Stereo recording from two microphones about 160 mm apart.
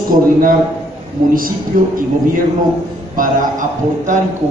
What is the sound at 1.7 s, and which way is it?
Speech, 60° right (ahead or behind).